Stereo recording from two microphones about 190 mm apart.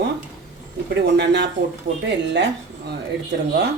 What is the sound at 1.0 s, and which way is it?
Speech, 65° right (ahead or behind).